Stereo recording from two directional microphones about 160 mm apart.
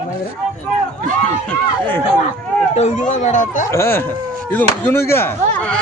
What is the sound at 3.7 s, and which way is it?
Speech, 15° left (ahead or behind).